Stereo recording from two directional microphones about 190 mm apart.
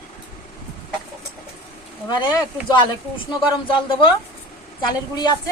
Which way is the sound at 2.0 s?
25° left (ahead or behind).